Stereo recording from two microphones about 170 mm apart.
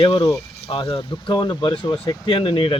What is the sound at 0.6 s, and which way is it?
Speech, 35° left (ahead or behind).